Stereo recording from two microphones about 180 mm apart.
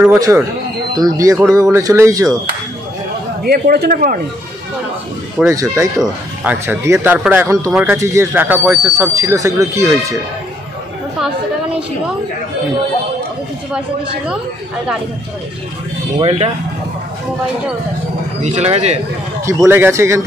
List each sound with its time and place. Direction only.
0.0 s speech: 15° right (ahead or behind)
3.4 s a man's voice: 55° right (ahead or behind)
5.5 s speech: 20° right (ahead or behind)
16.2 s speech: 35° right (ahead or behind)
18.4 s speech: 40° right (ahead or behind)
19.4 s speech: 15° right (ahead or behind)